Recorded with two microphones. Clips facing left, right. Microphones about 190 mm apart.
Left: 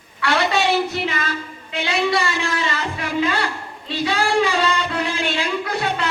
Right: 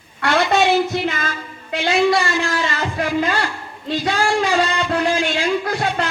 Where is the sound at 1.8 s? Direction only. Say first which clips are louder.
Right 4 dB; 50° right (ahead or behind).